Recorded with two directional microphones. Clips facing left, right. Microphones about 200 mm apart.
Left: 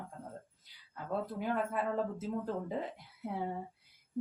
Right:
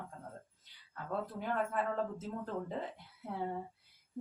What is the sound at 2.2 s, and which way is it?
Speech, 10° left (ahead or behind).